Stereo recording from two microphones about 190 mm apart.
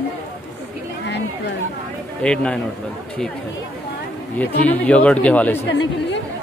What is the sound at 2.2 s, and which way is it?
Speech, 5° left (ahead or behind).